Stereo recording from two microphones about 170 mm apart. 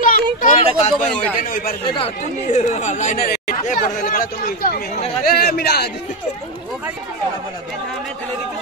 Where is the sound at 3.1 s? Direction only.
65° left (ahead or behind).